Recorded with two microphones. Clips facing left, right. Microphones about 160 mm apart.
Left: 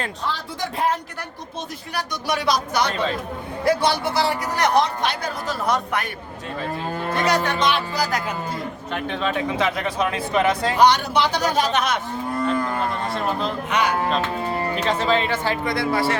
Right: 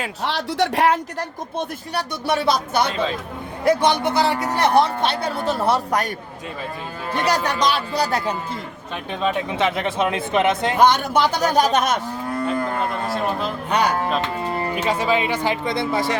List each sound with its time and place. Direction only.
0.2 s speech: 75° right (ahead or behind)
2.0 s speech: 30° right (ahead or behind)
7.1 s music: 35° right (ahead or behind)
9.0 s speech: 20° right (ahead or behind)
10.8 s a man's voice: 50° right (ahead or behind)
13.1 s speech: centre (ahead or behind)
13.7 s music: 35° right (ahead or behind)
14.8 s speech: 10° right (ahead or behind)